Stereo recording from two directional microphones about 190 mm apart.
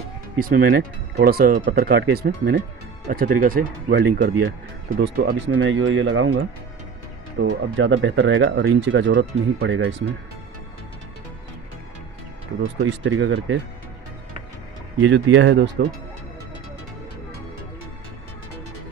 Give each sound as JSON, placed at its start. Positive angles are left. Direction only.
{"t": 0.4, "sound": "speech", "side_deg": -50}
{"t": 4.8, "sound": "speech", "side_deg": -90}
{"t": 5.1, "sound": "speech", "side_deg": -65}
{"t": 7.3, "sound": "speech", "side_deg": -80}
{"t": 12.8, "sound": "speech", "side_deg": -90}
{"t": 15.0, "sound": "speech", "side_deg": -85}